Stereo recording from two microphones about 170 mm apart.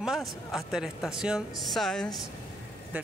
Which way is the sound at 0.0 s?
Centre (ahead or behind).